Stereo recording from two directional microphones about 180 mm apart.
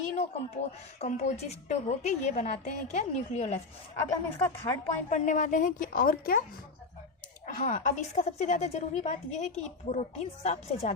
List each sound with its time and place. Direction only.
0.0 s a woman's voice: 40° left (ahead or behind)
4.4 s a woman's voice: 15° left (ahead or behind)
5.0 s a woman's voice: 40° left (ahead or behind)
7.4 s a woman's voice: 45° left (ahead or behind)